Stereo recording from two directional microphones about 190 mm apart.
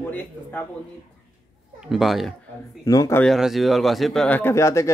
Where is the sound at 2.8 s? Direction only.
20° left (ahead or behind).